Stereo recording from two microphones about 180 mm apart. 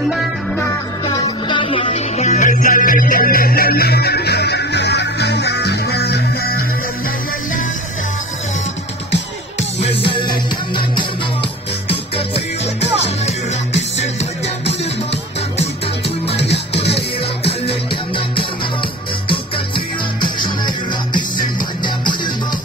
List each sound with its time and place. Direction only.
1.0 s music: 25° left (ahead or behind); by 6.6 s 60° left (ahead or behind)
9.8 s music: 30° left (ahead or behind)
16.3 s music: 70° left (ahead or behind)
20.2 s music: 25° left (ahead or behind)